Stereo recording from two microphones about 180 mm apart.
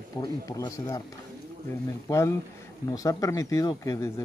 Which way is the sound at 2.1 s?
20° left (ahead or behind).